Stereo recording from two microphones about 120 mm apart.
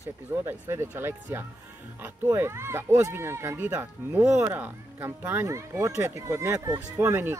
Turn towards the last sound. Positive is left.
turn(degrees=-20)  # may be behind; listen again after turning